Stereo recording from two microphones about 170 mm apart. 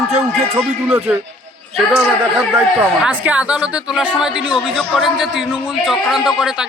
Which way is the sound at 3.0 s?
5° right (ahead or behind).